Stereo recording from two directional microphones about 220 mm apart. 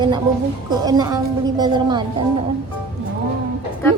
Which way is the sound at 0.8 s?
15° right (ahead or behind).